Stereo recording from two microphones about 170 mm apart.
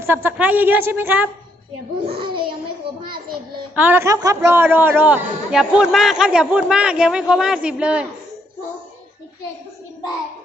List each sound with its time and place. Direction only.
0.0 s a woman's voice: 15° right (ahead or behind)
2.0 s babbling: 30° right (ahead or behind)
3.8 s a man's voice: 10° right (ahead or behind)